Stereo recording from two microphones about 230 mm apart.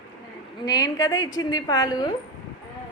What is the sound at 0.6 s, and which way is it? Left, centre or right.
A woman's voice, centre.